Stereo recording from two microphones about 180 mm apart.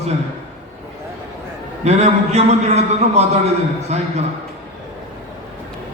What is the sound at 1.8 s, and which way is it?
A man's voice, 35° right (ahead or behind).